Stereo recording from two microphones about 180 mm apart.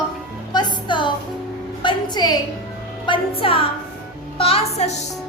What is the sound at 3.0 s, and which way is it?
A woman's voice, 30° left (ahead or behind).